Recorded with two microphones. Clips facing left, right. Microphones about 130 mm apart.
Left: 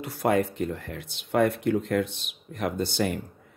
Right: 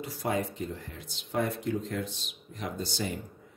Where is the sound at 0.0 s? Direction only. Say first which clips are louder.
Left 7 dB; 60° left (ahead or behind).